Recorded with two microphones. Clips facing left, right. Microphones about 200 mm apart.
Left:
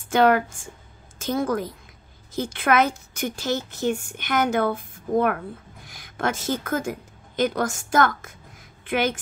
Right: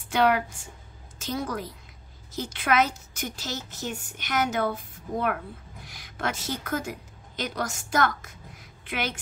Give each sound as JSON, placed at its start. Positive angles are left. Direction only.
{"t": 0.1, "sound": "a woman's voice", "side_deg": 50}